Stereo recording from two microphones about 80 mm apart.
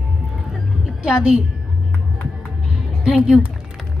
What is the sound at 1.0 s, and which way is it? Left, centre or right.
Speech, centre.